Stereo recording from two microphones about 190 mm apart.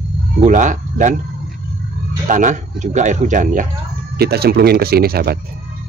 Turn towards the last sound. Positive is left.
turn(degrees=-50)  # may be behind; listen again after turning